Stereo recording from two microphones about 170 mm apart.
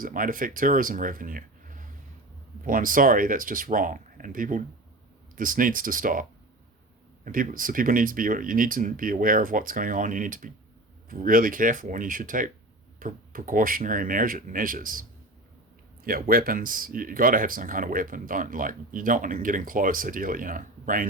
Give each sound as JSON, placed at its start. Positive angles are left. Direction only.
{"t": 0.0, "sound": "speech", "side_deg": -55}
{"t": 7.3, "sound": "speech", "side_deg": -55}
{"t": 16.0, "sound": "speech", "side_deg": -60}